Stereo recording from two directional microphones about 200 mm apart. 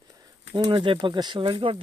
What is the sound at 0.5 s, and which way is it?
Speech, 25° right (ahead or behind).